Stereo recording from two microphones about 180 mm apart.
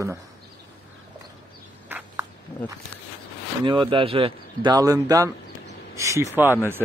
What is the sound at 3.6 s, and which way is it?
Speech, 30° right (ahead or behind).